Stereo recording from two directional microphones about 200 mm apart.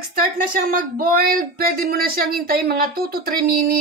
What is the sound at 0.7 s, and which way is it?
Speech, 45° right (ahead or behind).